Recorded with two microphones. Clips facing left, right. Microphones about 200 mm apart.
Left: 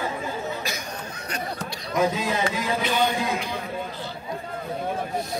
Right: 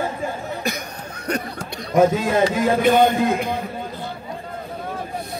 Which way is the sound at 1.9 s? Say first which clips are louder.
Right 7 dB; 50° right (ahead or behind).